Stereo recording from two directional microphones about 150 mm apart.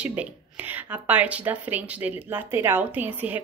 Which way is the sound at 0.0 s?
10° right (ahead or behind).